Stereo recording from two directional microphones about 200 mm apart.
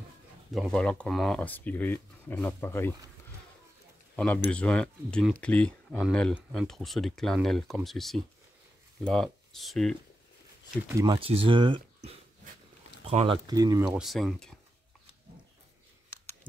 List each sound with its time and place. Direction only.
0.5 s speech: centre (ahead or behind)
4.2 s speech: 5° left (ahead or behind)
10.9 s speech: 15° right (ahead or behind)
11.1 s speech: 30° right (ahead or behind)
13.5 s speech: 20° right (ahead or behind)
13.9 s speech: centre (ahead or behind)